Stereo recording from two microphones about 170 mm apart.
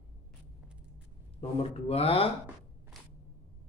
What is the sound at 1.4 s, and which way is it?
Speech, 35° left (ahead or behind).